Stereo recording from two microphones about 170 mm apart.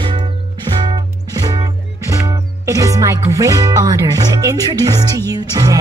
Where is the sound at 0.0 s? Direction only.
30° right (ahead or behind).